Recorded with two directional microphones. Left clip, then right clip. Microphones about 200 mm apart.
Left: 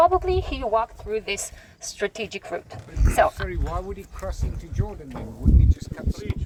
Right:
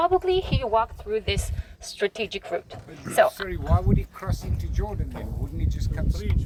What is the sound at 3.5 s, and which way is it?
Speech, 20° right (ahead or behind).